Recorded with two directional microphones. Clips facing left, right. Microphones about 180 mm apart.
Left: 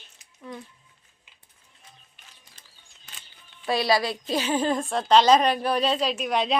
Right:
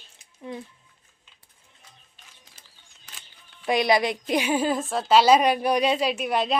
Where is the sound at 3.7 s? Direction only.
20° right (ahead or behind); by 6.6 s 5° right (ahead or behind).